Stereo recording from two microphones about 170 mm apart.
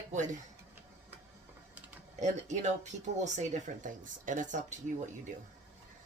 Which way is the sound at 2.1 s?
45° right (ahead or behind).